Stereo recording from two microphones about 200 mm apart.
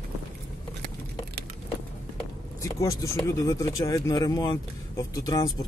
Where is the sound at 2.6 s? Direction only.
15° left (ahead or behind).